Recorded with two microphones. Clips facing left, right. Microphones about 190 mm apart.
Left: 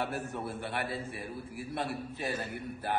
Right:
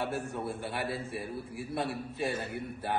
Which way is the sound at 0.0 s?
Centre (ahead or behind).